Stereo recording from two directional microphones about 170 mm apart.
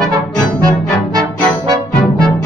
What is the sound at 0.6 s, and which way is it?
Music, 25° right (ahead or behind).